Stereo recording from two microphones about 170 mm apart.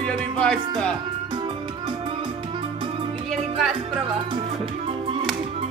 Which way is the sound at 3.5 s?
Centre (ahead or behind).